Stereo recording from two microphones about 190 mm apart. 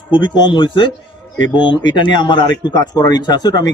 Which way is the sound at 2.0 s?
25° left (ahead or behind).